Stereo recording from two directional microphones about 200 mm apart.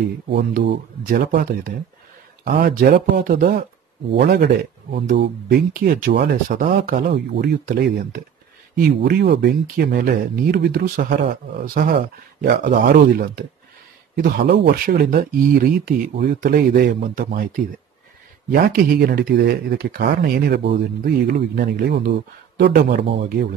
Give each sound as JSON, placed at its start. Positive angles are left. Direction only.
{"t": 0.3, "sound": "speech", "side_deg": -50}
{"t": 7.1, "sound": "speech", "side_deg": -55}
{"t": 18.5, "sound": "speech", "side_deg": -45}